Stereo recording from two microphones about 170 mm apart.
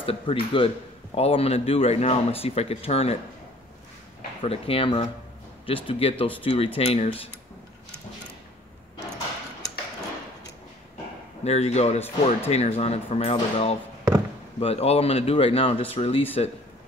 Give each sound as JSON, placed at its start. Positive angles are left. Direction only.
{"t": 0.0, "sound": "speech", "side_deg": 35}
{"t": 4.4, "sound": "speech", "side_deg": 35}
{"t": 11.4, "sound": "speech", "side_deg": 40}